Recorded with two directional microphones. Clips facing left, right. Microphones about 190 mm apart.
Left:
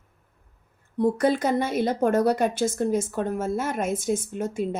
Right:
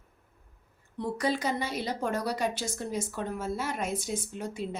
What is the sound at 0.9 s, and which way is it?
A woman's voice, 50° left (ahead or behind).